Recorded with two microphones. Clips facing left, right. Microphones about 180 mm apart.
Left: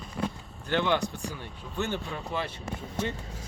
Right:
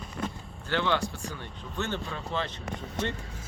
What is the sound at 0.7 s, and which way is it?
Speech, 15° left (ahead or behind).